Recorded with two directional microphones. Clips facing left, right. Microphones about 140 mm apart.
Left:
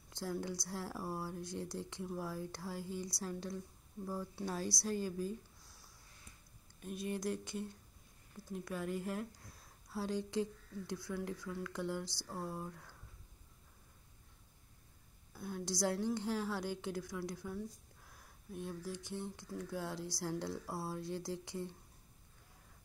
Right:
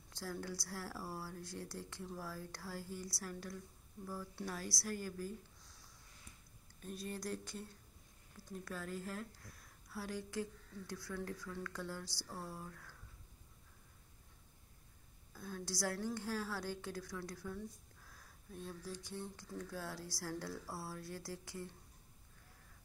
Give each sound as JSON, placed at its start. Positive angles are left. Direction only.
{"t": 0.1, "sound": "speech", "side_deg": 20}
{"t": 5.6, "sound": "a sound", "side_deg": 10}
{"t": 6.8, "sound": "a woman's voice", "side_deg": 10}
{"t": 15.3, "sound": "a woman's voice", "side_deg": 15}